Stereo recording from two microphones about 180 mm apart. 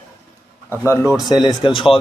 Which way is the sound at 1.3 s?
20° left (ahead or behind).